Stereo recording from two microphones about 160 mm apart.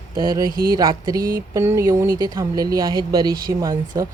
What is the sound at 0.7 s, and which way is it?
A woman's voice, 25° right (ahead or behind).